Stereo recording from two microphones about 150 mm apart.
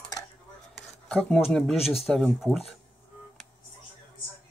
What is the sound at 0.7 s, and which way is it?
Speech, 5° left (ahead or behind).